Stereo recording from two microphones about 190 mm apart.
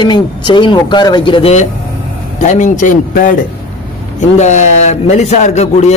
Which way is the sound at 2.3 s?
40° left (ahead or behind).